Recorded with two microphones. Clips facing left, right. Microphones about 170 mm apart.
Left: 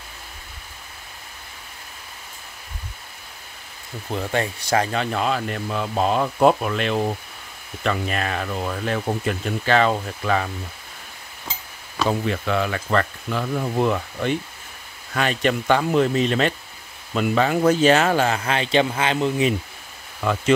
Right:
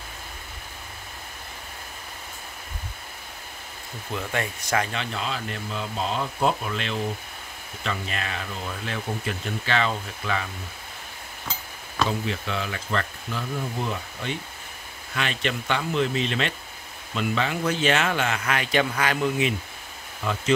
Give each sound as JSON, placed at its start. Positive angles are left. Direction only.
{"t": 4.1, "sound": "a man's voice", "side_deg": 30}
{"t": 5.1, "sound": "speech", "side_deg": 55}
{"t": 12.1, "sound": "speech", "side_deg": 55}
{"t": 15.1, "sound": "a man's voice", "side_deg": 45}